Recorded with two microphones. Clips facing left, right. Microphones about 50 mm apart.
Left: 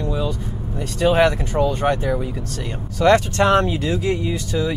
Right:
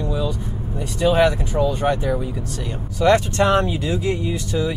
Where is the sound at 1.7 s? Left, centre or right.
Centre.